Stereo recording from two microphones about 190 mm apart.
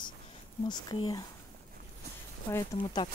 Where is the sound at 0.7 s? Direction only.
20° left (ahead or behind).